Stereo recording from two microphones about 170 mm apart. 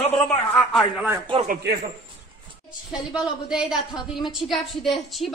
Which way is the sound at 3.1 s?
5° right (ahead or behind).